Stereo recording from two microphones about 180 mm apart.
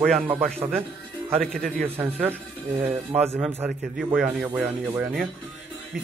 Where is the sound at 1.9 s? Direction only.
10° right (ahead or behind).